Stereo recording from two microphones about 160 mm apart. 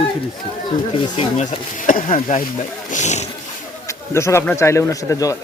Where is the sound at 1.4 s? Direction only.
55° left (ahead or behind).